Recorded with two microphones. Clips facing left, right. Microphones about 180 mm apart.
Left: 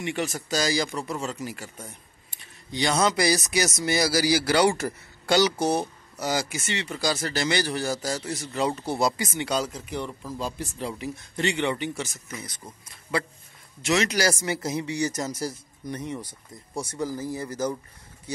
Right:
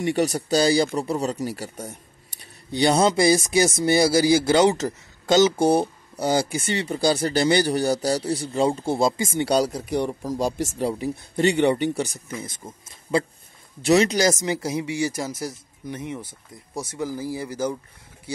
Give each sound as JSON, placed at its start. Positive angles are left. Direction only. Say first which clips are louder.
{"t": 0.0, "sound": "a man's voice", "louder": "right 7 dB", "side_deg": -40}
{"t": 9.4, "sound": "speech", "louder": "right 7 dB", "side_deg": -35}
{"t": 10.4, "sound": "speech", "louder": "right 7 dB", "side_deg": -90}
{"t": 10.8, "sound": "speech", "louder": "right 6 dB", "side_deg": -35}
{"t": 12.5, "sound": "a man's voice", "louder": "right 4 dB", "side_deg": -25}
{"t": 14.1, "sound": "speech", "louder": "right 4 dB", "side_deg": -20}